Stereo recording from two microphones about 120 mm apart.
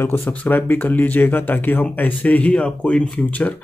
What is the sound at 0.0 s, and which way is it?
Speech, 20° left (ahead or behind).